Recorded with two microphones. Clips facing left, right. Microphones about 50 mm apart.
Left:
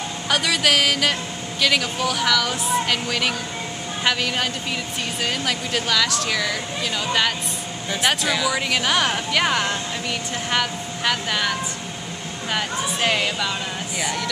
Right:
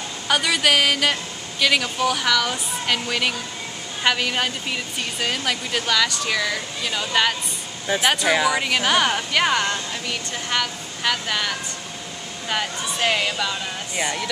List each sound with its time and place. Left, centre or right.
0.3 s a woman's voice: centre
13.9 s a woman's voice: centre